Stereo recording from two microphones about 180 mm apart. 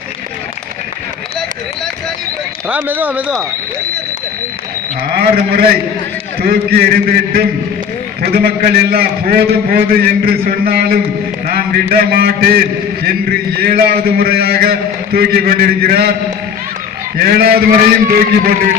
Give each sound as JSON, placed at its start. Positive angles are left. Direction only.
{"t": 2.6, "sound": "speech", "side_deg": -10}
{"t": 5.1, "sound": "a man's voice", "side_deg": -55}
{"t": 17.2, "sound": "a man's voice", "side_deg": -55}